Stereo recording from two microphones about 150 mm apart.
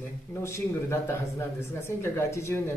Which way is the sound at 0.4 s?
20° left (ahead or behind).